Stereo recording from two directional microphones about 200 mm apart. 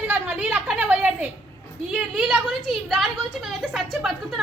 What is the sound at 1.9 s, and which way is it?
A woman's voice, 5° right (ahead or behind).